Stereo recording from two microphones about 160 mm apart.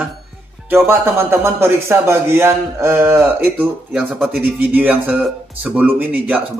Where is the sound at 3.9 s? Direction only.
Centre (ahead or behind).